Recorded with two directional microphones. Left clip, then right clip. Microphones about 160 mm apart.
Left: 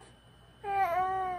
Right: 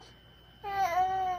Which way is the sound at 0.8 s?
25° left (ahead or behind).